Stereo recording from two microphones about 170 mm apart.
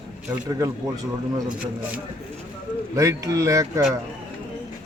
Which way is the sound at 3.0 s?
20° right (ahead or behind).